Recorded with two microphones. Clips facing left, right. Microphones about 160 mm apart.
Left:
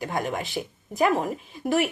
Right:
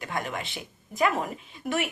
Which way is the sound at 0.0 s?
40° left (ahead or behind).